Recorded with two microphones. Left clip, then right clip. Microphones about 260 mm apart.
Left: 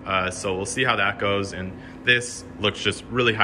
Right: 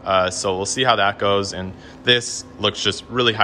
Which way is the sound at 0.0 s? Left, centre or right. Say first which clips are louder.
Right 6 dB; centre.